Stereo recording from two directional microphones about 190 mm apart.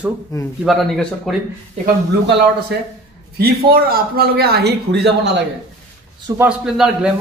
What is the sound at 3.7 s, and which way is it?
Speech, 50° right (ahead or behind).